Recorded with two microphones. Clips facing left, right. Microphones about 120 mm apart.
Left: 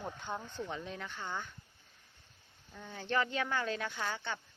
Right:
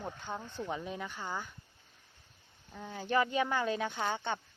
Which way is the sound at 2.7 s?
10° right (ahead or behind).